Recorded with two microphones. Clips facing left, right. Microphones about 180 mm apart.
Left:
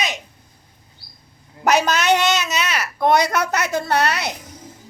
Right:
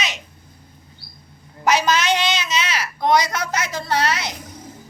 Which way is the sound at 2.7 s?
60° left (ahead or behind).